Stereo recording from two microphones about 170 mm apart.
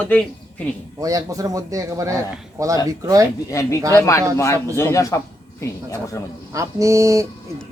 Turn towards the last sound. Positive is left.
turn(degrees=-20)  # may be behind; listen again after turning